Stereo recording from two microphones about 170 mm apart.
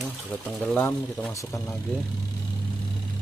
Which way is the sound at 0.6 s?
10° left (ahead or behind).